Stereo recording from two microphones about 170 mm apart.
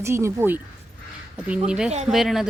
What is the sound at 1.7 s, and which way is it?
Speech, 5° right (ahead or behind).